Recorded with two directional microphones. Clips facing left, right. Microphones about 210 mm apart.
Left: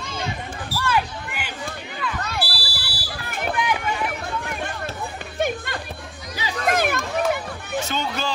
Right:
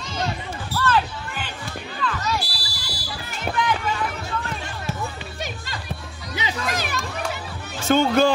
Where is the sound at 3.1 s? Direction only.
55° left (ahead or behind).